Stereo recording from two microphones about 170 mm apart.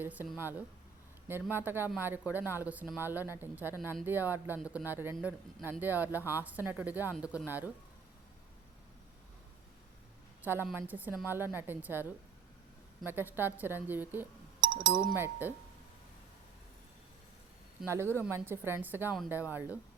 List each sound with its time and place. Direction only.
0.0 s speech: 10° right (ahead or behind)
10.4 s speech: 10° right (ahead or behind)
13.1 s speech: 10° right (ahead or behind)
14.6 s chink: 55° right (ahead or behind)
14.9 s speech: 10° right (ahead or behind)
17.8 s speech: 15° right (ahead or behind)